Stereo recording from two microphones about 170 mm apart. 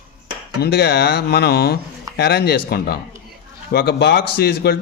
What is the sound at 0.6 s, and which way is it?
A man's voice, 70° left (ahead or behind).